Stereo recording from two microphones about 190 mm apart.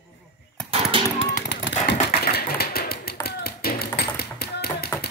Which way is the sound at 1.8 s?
55° left (ahead or behind).